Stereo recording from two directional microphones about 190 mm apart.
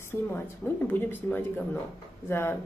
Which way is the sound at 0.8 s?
10° left (ahead or behind).